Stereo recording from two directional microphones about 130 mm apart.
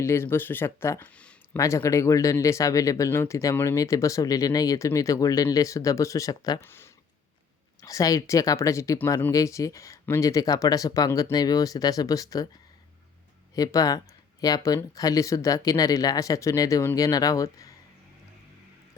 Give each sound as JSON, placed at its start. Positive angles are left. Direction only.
{"t": 0.0, "sound": "speech", "side_deg": 20}
{"t": 1.5, "sound": "speech", "side_deg": 25}
{"t": 13.6, "sound": "speech", "side_deg": 25}